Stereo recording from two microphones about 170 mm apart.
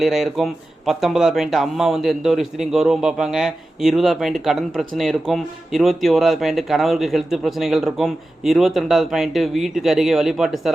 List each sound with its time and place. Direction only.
0.0 s speech: centre (ahead or behind)